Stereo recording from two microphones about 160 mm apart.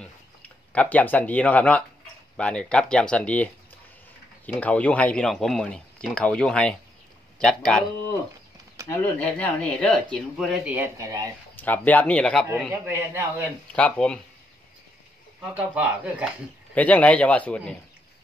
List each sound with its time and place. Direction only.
0.7 s speech: 10° left (ahead or behind)
4.6 s speech: 10° left (ahead or behind)
8.8 s speech: 15° left (ahead or behind); by 10.9 s 10° right (ahead or behind)
11.0 s speech: 20° right (ahead or behind)
11.6 s speech: 10° left (ahead or behind)
12.5 s a man's voice: 15° right (ahead or behind)
13.7 s speech: 5° left (ahead or behind)
15.5 s a man's voice: 10° right (ahead or behind)
16.7 s speech: 10° left (ahead or behind)